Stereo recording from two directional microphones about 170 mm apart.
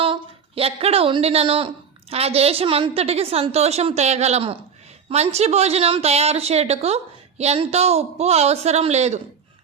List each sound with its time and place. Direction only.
0.0 s speech: 35° right (ahead or behind)